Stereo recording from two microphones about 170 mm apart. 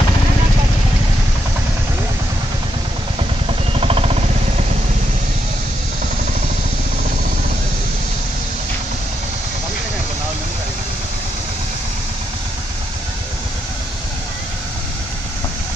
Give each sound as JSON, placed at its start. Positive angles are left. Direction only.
{"t": 3.7, "sound": "vehicle", "side_deg": -35}